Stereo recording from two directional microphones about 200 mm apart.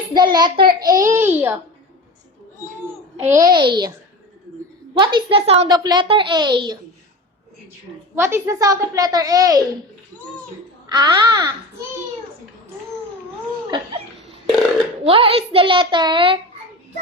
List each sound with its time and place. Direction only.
0.1 s a child's voice: 20° right (ahead or behind)
3.2 s a child's voice: 15° right (ahead or behind)
4.9 s a child's voice: 25° right (ahead or behind)
8.1 s a child's voice: 10° right (ahead or behind)
10.8 s a child's voice: 20° right (ahead or behind)
13.7 s laughter: 25° right (ahead or behind)
15.0 s a child's voice: 25° right (ahead or behind)